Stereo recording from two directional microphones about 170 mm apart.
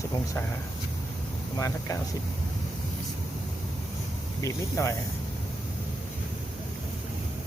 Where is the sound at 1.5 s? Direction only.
20° left (ahead or behind).